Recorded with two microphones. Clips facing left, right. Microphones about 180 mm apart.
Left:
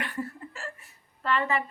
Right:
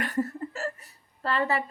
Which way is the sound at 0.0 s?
40° right (ahead or behind).